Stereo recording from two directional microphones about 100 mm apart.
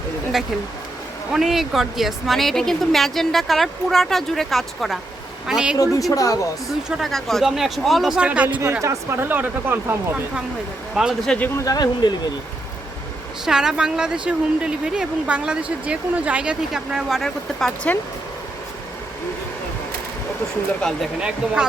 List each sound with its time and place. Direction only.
1.3 s speech: 5° right (ahead or behind)
5.7 s a woman's voice: 35° left (ahead or behind)
6.7 s speech: 5° right (ahead or behind)
8.8 s speech: 30° right (ahead or behind)
9.2 s speech: 20° right (ahead or behind)
11.0 s speech: 5° right (ahead or behind)
11.4 s a woman's voice: 30° left (ahead or behind)
13.4 s speech: 5° right (ahead or behind)
20.8 s speech: 5° left (ahead or behind)
21.2 s speech: 10° right (ahead or behind)